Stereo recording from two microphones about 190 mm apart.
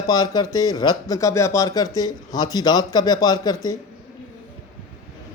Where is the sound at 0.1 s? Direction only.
20° left (ahead or behind).